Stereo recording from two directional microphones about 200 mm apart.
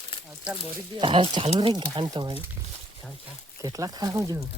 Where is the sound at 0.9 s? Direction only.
25° right (ahead or behind).